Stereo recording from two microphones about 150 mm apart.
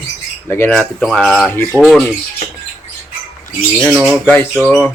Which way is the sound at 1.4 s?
10° left (ahead or behind).